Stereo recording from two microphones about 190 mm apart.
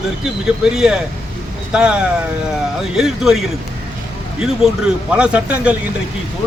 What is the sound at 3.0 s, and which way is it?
Speech, centre (ahead or behind).